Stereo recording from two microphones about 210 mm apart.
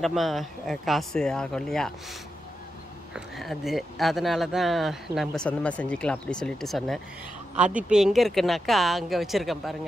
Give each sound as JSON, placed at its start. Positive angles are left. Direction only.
{"t": 0.0, "sound": "speech", "side_deg": 0}